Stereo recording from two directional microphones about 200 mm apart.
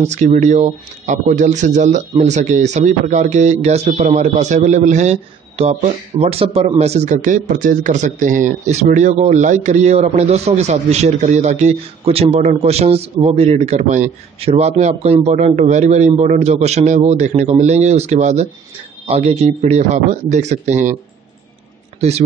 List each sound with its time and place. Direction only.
0.0 s speech: 35° right (ahead or behind)